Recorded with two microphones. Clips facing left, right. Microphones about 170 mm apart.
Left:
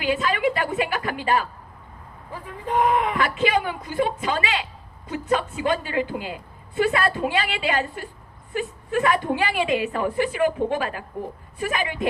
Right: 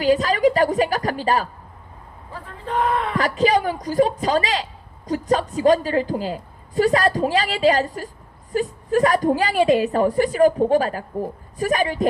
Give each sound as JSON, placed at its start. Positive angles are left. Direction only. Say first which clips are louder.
{"t": 0.0, "sound": "a woman's voice", "louder": "right 6 dB", "side_deg": -40}
{"t": 2.3, "sound": "speech", "louder": "left 1 dB", "side_deg": 15}
{"t": 3.2, "sound": "a woman's voice", "louder": "right 4 dB", "side_deg": -40}